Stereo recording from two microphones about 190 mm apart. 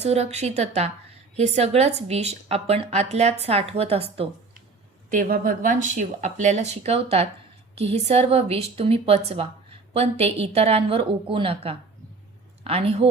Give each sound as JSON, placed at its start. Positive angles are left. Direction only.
{"t": 0.0, "sound": "speech", "side_deg": -35}
{"t": 5.0, "sound": "speech", "side_deg": -45}